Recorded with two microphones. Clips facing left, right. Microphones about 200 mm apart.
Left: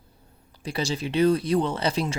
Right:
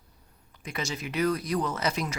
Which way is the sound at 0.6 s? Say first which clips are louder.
Left 6 dB; 30° left (ahead or behind).